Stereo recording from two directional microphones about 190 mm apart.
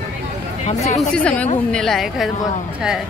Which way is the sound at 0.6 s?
40° left (ahead or behind).